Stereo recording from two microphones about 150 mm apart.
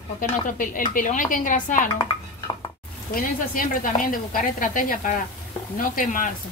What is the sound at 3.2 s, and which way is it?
A woman's voice, 70° left (ahead or behind).